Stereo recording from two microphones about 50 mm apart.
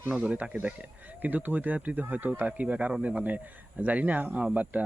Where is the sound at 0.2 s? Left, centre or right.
Right.